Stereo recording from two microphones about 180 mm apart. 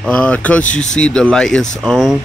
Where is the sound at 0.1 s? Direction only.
5° left (ahead or behind).